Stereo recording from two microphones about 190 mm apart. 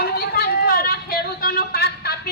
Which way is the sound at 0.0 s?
55° left (ahead or behind).